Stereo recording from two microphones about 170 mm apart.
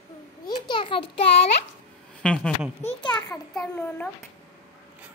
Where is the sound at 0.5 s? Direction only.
25° left (ahead or behind).